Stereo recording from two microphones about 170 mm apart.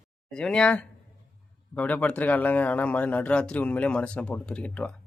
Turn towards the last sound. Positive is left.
turn(degrees=5)  # may be behind; listen again after turning